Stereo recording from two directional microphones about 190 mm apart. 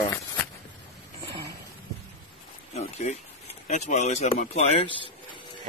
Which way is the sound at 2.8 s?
35° left (ahead or behind).